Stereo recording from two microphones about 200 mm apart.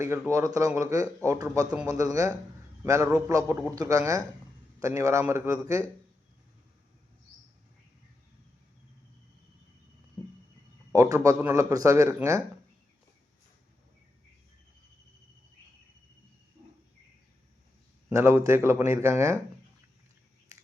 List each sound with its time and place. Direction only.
0.0 s speech: 15° right (ahead or behind)
10.9 s speech: 15° right (ahead or behind)
18.1 s speech: 15° right (ahead or behind)